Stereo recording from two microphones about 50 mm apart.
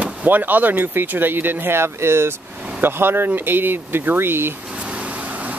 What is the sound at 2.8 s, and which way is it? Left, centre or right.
Speech, right.